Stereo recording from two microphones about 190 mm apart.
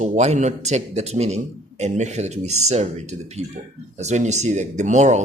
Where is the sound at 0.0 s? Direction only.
35° right (ahead or behind).